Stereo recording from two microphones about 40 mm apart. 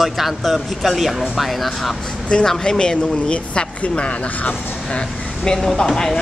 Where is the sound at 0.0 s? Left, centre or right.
Centre.